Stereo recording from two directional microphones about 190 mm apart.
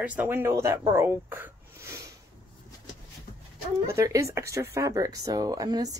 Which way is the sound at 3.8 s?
15° right (ahead or behind).